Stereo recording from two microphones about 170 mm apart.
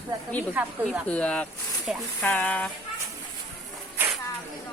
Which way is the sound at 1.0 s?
10° left (ahead or behind).